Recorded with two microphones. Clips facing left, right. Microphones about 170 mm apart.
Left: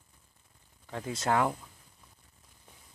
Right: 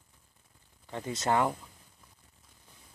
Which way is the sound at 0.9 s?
Centre (ahead or behind).